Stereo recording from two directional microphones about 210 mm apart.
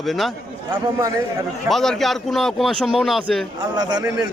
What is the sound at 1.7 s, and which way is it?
A man's voice, centre (ahead or behind).